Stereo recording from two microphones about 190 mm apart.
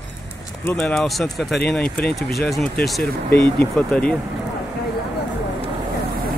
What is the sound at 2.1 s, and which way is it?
Speech, 55° left (ahead or behind).